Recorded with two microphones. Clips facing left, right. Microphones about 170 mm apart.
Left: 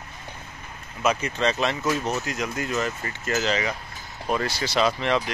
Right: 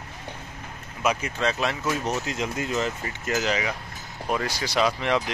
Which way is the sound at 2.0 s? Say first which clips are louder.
Even; 20° right (ahead or behind).